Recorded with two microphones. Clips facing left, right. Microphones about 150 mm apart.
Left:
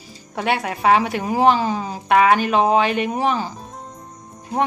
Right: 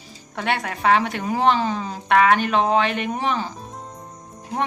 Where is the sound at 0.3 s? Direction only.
5° left (ahead or behind).